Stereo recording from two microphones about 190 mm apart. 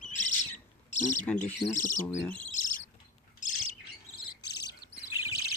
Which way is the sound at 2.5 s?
45° left (ahead or behind).